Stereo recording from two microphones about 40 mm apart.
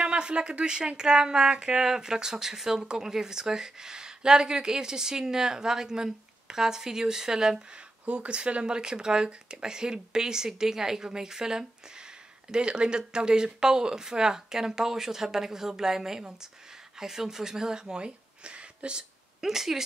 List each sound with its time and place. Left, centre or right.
0.0 s speech: right
8.0 s speech: right
19.4 s speech: centre